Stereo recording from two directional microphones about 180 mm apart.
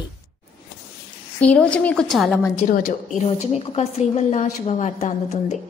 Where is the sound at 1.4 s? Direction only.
5° left (ahead or behind).